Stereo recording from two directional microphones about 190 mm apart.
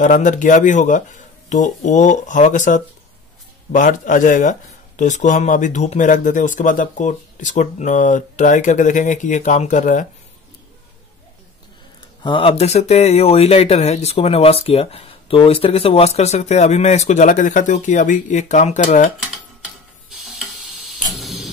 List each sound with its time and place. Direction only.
0.0 s speech: 40° left (ahead or behind)
12.2 s speech: 25° left (ahead or behind)
20.2 s stir: centre (ahead or behind)
21.2 s tick-tock: centre (ahead or behind)